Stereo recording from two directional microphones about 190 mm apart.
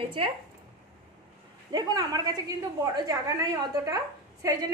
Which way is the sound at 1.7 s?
20° right (ahead or behind).